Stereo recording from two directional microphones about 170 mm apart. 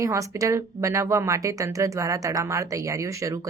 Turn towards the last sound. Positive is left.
turn(degrees=-20)  # may be behind; listen again after turning